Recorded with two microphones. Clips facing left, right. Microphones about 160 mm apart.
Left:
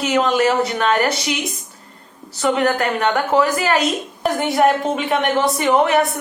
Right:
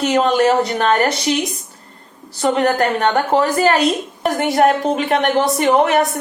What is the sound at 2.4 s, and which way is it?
A woman's voice, 40° right (ahead or behind).